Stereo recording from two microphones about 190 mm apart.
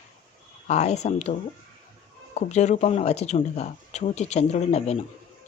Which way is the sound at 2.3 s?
35° left (ahead or behind).